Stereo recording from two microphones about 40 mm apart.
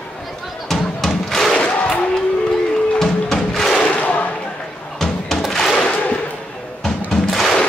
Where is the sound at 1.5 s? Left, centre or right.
Left.